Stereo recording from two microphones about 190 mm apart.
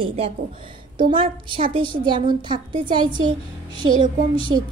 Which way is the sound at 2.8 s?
25° right (ahead or behind).